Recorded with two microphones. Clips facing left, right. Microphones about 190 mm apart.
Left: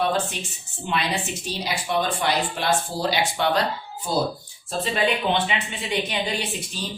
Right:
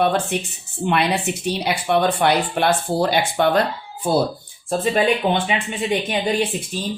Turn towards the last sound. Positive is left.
turn(degrees=-50)  # may be behind; listen again after turning